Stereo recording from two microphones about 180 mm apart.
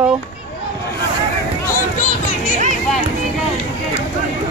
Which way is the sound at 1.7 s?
45° left (ahead or behind).